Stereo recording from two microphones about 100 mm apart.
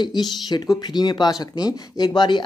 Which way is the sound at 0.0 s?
45° left (ahead or behind).